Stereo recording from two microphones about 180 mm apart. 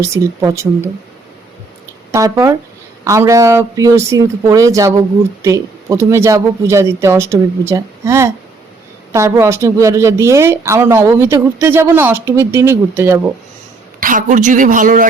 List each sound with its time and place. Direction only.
0.0 s speech: 15° right (ahead or behind)
2.1 s speech: 20° right (ahead or behind)
14.0 s speech: 45° right (ahead or behind)